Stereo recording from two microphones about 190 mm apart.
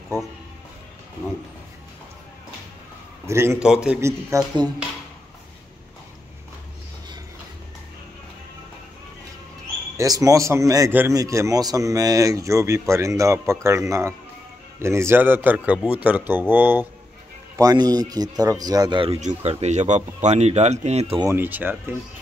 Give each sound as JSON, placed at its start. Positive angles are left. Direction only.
{"t": 3.3, "sound": "a man's voice", "side_deg": -15}
{"t": 4.3, "sound": "a man's voice", "side_deg": -20}
{"t": 9.9, "sound": "a man's voice", "side_deg": -20}
{"t": 19.2, "sound": "speech", "side_deg": -35}
{"t": 21.2, "sound": "speech", "side_deg": -15}